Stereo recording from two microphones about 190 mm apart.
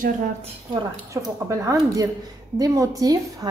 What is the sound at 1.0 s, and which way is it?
A woman's voice, 15° right (ahead or behind).